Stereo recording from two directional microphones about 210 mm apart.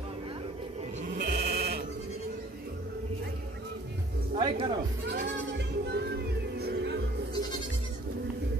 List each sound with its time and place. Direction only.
1.1 s bleat: 50° right (ahead or behind)
4.4 s speech: 25° right (ahead or behind)
5.0 s music: 55° right (ahead or behind)